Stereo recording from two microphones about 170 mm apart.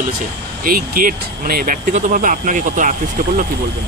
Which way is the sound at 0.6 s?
55° right (ahead or behind).